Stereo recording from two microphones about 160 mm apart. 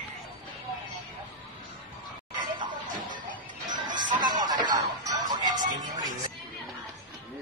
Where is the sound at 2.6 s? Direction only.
55° right (ahead or behind).